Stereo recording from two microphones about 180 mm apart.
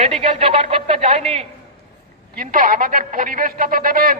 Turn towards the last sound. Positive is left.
turn(degrees=-50)  # may be behind; listen again after turning